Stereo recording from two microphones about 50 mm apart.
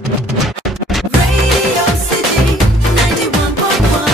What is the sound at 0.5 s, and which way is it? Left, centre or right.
Music, centre.